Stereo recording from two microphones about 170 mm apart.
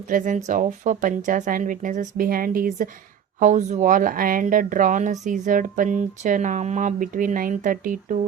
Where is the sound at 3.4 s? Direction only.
45° right (ahead or behind).